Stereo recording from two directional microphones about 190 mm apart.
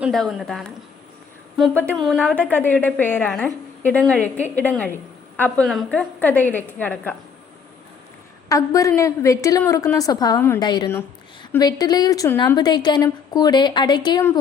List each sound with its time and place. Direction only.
0.0 s a woman's voice: centre (ahead or behind)
8.4 s a woman's voice: 15° left (ahead or behind)